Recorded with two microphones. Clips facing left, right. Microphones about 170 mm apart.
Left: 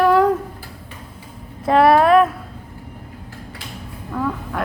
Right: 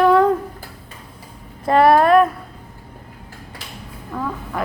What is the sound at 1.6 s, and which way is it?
Speech, centre (ahead or behind).